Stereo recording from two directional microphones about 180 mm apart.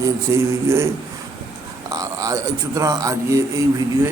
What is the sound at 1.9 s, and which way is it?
Speech, 20° right (ahead or behind).